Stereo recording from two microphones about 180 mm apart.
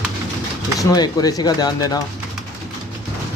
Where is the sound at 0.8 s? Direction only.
20° left (ahead or behind).